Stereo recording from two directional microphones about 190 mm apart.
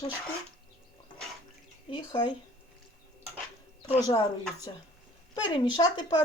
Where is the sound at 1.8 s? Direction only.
25° left (ahead or behind).